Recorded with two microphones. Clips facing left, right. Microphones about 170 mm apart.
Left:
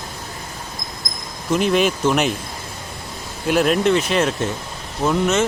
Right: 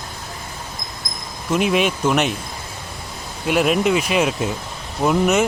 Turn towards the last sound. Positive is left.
turn(degrees=-15)  # may be behind; listen again after turning